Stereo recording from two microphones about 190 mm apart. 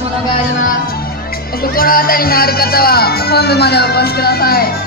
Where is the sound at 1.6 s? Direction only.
50° left (ahead or behind).